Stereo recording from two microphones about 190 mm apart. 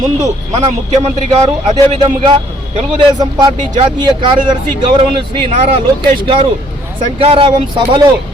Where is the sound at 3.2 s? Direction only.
20° right (ahead or behind).